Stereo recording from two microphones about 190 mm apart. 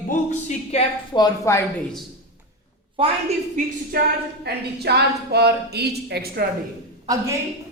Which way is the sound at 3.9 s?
50° right (ahead or behind).